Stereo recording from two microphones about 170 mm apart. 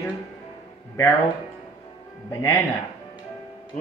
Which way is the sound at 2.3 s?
15° left (ahead or behind).